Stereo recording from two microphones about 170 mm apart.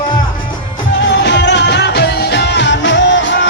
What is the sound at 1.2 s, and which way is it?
Music, 90° left.